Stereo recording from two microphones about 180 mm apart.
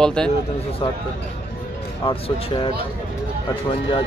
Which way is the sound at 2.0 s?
30° left (ahead or behind).